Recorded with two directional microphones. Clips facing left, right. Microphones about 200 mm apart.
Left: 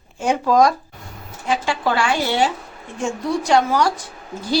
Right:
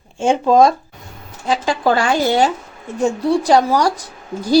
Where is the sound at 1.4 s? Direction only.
40° right (ahead or behind).